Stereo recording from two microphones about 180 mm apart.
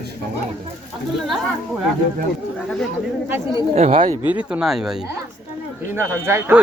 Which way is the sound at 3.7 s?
35° right (ahead or behind).